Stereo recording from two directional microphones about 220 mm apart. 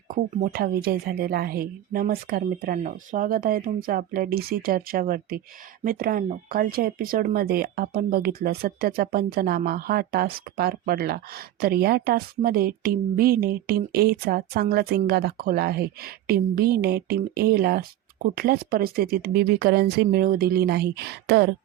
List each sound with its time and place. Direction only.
0.1 s speech: 40° right (ahead or behind)